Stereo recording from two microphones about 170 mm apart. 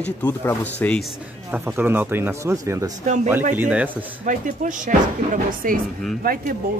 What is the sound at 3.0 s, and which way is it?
Speech, 45° right (ahead or behind).